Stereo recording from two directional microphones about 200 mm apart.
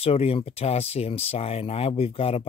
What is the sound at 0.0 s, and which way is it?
Speech, 30° left (ahead or behind).